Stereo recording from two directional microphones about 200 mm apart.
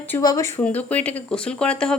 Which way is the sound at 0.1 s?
15° left (ahead or behind).